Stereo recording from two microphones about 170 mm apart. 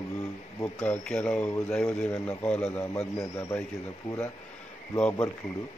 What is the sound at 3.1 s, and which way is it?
Speech, 20° left (ahead or behind).